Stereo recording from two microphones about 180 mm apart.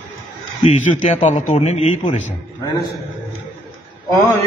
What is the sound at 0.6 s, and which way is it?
A man's voice, 40° left (ahead or behind).